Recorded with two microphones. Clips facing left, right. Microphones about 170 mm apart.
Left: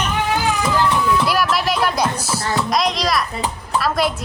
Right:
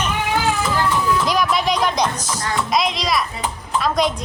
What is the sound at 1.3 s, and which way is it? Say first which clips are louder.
Speech: even; 5° left (ahead or behind).